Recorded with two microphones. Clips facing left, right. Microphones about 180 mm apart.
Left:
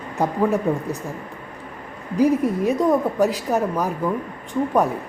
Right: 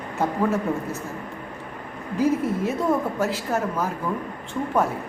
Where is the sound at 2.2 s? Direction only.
15° left (ahead or behind).